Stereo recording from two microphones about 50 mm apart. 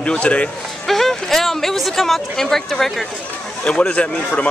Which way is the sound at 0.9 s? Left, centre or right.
Centre.